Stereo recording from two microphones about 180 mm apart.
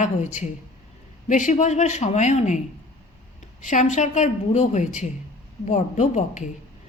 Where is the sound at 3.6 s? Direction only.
45° left (ahead or behind).